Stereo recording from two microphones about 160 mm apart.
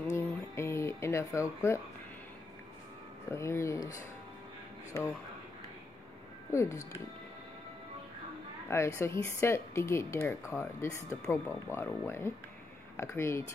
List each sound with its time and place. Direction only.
0.1 s a sound: 15° left (ahead or behind)
3.3 s speech: 15° left (ahead or behind)
6.5 s speech: 20° left (ahead or behind)
8.6 s speech: 15° left (ahead or behind)